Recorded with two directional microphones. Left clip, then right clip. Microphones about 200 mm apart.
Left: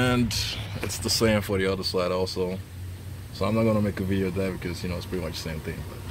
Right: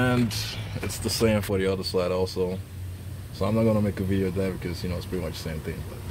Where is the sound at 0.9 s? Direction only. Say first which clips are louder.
Left 1 dB; 15° right (ahead or behind).